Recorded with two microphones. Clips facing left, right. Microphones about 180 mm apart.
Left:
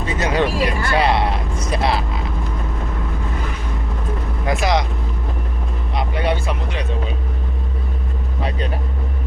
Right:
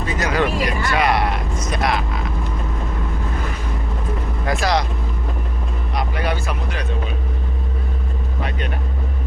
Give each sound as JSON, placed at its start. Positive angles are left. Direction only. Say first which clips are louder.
{"t": 0.0, "sound": "speech", "louder": "left 1 dB", "side_deg": 25}
{"t": 4.4, "sound": "speech", "louder": "left 1 dB", "side_deg": 20}
{"t": 6.0, "sound": "music", "louder": "left 3 dB", "side_deg": 25}
{"t": 8.4, "sound": "vehicle", "louder": "left 3 dB", "side_deg": 30}